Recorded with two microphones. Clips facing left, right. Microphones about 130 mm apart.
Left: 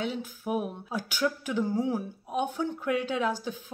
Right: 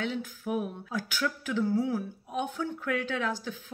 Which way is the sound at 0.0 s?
15° left (ahead or behind).